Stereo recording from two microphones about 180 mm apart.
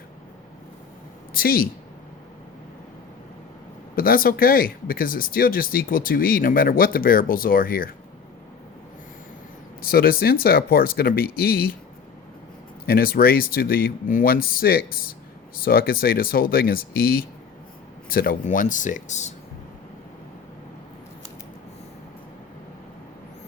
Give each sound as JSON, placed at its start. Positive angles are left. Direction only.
{"t": 1.3, "sound": "speech", "side_deg": 55}
{"t": 3.9, "sound": "speech", "side_deg": 55}
{"t": 9.8, "sound": "speech", "side_deg": 55}
{"t": 12.8, "sound": "speech", "side_deg": 55}